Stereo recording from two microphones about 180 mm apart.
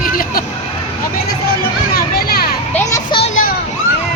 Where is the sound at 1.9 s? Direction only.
60° left (ahead or behind).